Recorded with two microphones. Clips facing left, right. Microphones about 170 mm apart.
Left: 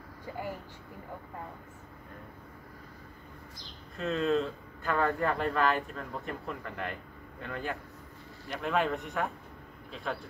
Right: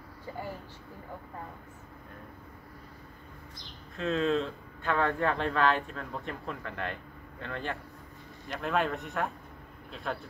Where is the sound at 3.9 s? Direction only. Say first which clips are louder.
Even; centre (ahead or behind).